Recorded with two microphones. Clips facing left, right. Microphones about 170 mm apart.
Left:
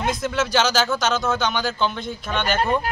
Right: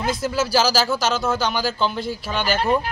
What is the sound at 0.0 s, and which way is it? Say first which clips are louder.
Speech: right 1 dB; 5° right (ahead or behind).